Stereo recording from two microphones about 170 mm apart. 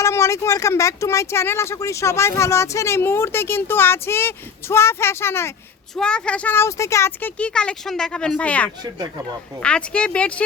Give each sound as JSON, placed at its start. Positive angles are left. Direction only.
{"t": 0.0, "sound": "speech", "side_deg": 15}